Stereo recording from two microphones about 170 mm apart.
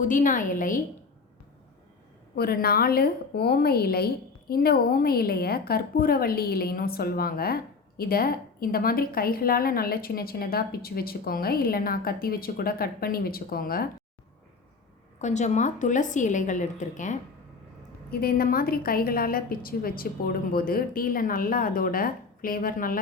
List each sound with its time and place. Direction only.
0.0 s a woman's voice: 50° left (ahead or behind)
2.3 s a woman's voice: 65° left (ahead or behind)
15.2 s a woman's voice: 45° left (ahead or behind)
18.1 s a woman's voice: 60° left (ahead or behind)